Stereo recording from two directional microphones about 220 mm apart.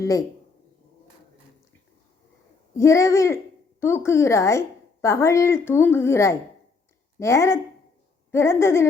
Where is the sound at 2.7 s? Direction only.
15° left (ahead or behind).